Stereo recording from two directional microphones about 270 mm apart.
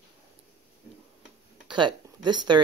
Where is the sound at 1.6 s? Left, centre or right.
Centre.